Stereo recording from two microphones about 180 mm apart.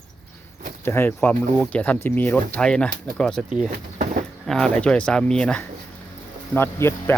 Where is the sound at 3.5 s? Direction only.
45° right (ahead or behind).